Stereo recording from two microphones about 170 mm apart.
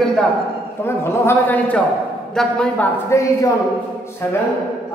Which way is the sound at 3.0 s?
20° left (ahead or behind).